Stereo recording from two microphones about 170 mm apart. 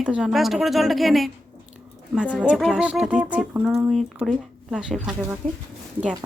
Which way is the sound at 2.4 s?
5° right (ahead or behind).